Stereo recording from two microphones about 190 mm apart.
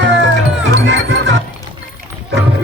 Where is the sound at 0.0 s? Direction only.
70° right (ahead or behind).